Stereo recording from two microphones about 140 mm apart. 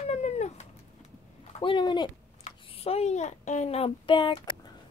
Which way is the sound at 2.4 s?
50° left (ahead or behind).